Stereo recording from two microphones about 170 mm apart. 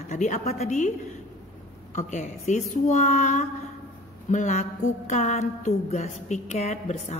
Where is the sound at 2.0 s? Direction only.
45° left (ahead or behind).